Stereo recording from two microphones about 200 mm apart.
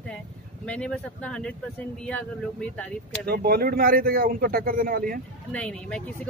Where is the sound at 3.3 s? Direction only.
50° right (ahead or behind).